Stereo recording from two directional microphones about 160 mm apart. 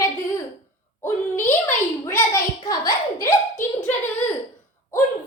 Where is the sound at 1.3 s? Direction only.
15° left (ahead or behind).